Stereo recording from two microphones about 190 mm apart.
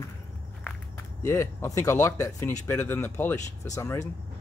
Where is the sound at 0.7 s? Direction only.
15° left (ahead or behind).